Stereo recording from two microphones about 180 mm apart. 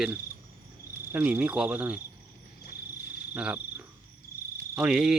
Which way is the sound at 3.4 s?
5° right (ahead or behind).